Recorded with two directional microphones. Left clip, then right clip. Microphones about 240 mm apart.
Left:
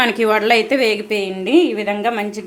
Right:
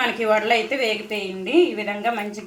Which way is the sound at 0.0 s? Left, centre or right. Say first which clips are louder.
Left 5 dB; left.